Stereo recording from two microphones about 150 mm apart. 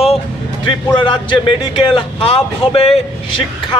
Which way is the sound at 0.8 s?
30° left (ahead or behind).